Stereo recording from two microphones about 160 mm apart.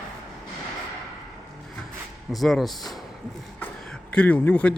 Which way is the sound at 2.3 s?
Centre (ahead or behind).